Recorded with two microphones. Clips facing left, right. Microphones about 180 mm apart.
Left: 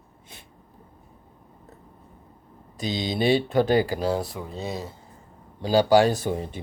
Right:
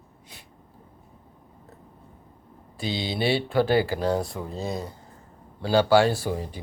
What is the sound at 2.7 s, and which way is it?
Speech, 20° left (ahead or behind).